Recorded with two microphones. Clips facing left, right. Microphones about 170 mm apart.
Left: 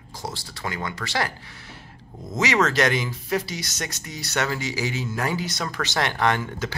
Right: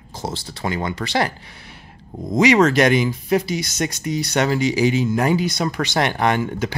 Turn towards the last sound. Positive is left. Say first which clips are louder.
# right 4 dB
turn(degrees=-15)  # may be behind; listen again after turning